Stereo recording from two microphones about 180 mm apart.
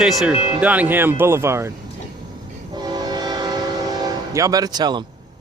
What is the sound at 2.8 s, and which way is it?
Train, 25° right (ahead or behind).